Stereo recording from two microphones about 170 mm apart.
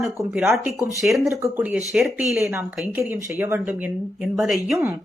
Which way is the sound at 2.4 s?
15° right (ahead or behind).